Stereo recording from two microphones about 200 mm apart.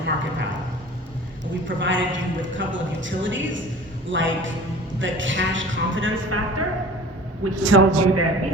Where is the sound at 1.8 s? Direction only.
70° right (ahead or behind).